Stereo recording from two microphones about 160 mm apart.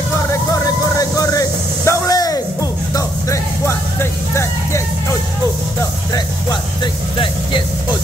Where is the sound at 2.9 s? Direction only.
20° left (ahead or behind).